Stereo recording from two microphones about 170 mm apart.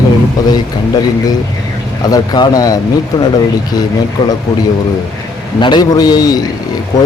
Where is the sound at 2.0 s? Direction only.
25° left (ahead or behind).